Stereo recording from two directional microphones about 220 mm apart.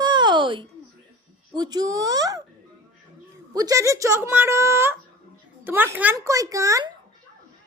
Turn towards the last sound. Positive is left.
turn(degrees=-15)  # may be behind; listen again after turning